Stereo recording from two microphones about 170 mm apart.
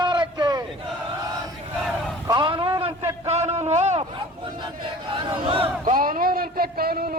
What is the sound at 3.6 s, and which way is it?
Speech, 40° right (ahead or behind).